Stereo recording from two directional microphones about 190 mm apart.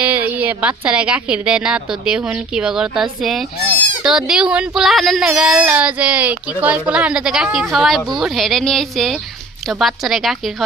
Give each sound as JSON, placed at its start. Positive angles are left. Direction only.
{"t": 0.0, "sound": "a woman's voice", "side_deg": -10}